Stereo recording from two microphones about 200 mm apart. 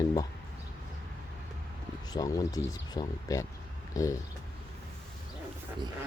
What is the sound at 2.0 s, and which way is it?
Speech, 20° left (ahead or behind).